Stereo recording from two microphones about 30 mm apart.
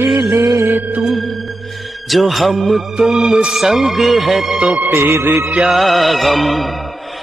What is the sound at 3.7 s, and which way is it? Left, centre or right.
Speech, centre.